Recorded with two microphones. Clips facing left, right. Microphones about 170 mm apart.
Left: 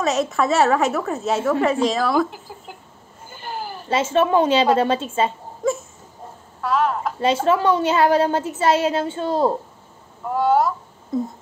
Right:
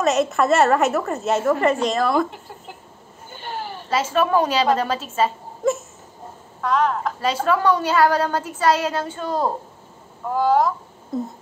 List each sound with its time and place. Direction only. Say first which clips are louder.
0.0 s a woman's voice: right 1 dB; centre (ahead or behind)
3.3 s a sound: even; centre (ahead or behind)
3.9 s a woman's voice: left 2 dB; 25° left (ahead or behind)
5.6 s a sound: right 1 dB; centre (ahead or behind)
6.6 s a woman's voice: even; 5° left (ahead or behind)
7.2 s a woman's voice: left 4 dB; 25° left (ahead or behind)
10.3 s speech: even; centre (ahead or behind)